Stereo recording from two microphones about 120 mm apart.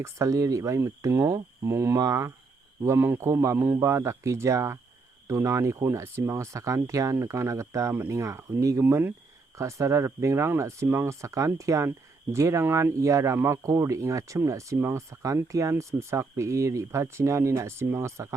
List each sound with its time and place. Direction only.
0.0 s speech: 25° right (ahead or behind)
2.8 s speech: 20° right (ahead or behind)